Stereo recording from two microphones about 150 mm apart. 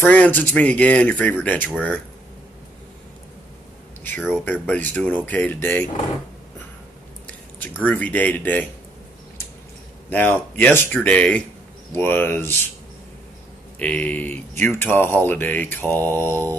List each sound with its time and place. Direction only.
0.0 s speech: 10° left (ahead or behind)
4.5 s speech: 10° left (ahead or behind)
7.2 s a sound: 10° left (ahead or behind)
7.8 s speech: 10° left (ahead or behind)
10.0 s speech: 15° left (ahead or behind)
13.7 s speech: 10° left (ahead or behind)